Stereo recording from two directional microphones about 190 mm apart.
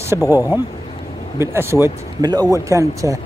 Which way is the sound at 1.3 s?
15° right (ahead or behind).